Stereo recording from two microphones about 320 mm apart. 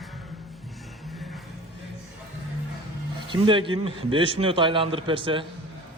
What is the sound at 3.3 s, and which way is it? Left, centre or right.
A man's voice, centre.